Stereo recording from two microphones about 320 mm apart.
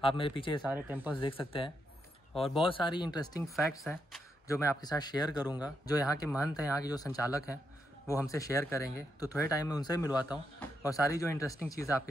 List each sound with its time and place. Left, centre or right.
0.0 s speech: centre
0.6 s speech: centre
1.2 s speech: centre
3.5 s speech: centre
10.3 s a sound: centre
10.9 s speech: centre